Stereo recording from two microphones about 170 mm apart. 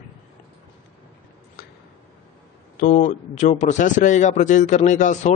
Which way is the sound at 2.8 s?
50° left (ahead or behind).